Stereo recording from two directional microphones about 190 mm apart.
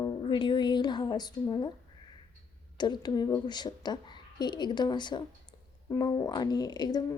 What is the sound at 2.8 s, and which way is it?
Speech, 20° left (ahead or behind).